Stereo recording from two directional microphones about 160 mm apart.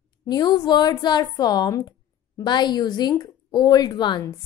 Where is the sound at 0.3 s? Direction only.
25° left (ahead or behind).